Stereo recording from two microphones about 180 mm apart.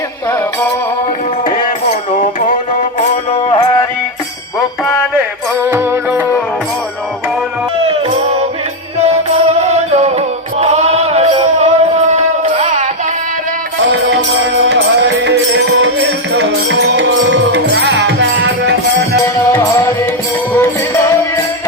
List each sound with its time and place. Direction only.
1.5 s music: 50° left (ahead or behind)
5.6 s music: 15° right (ahead or behind)
9.0 s music: 35° right (ahead or behind)
14.7 s music: 70° right (ahead or behind)
19.2 s music: 15° left (ahead or behind)